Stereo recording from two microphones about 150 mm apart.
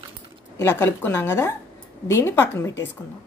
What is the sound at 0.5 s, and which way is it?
Speech, 15° left (ahead or behind).